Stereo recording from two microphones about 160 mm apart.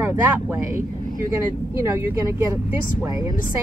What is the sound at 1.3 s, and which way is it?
Speech, 15° right (ahead or behind).